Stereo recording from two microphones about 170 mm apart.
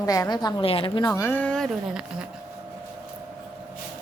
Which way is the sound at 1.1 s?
15° left (ahead or behind).